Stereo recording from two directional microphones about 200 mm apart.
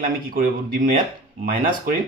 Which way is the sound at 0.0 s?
45° right (ahead or behind).